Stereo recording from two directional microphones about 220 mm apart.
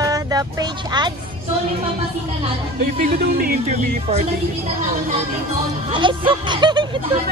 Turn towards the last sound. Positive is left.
turn(degrees=-20)  # may be behind; listen again after turning